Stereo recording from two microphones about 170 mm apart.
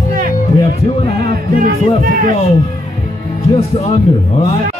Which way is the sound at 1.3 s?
55° right (ahead or behind).